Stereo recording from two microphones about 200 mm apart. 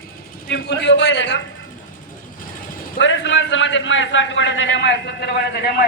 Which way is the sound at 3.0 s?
65° left (ahead or behind).